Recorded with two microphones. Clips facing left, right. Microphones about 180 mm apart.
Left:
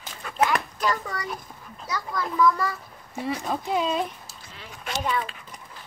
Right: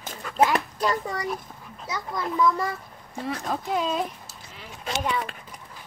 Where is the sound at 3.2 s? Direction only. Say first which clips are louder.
Left 1 dB; 5° left (ahead or behind).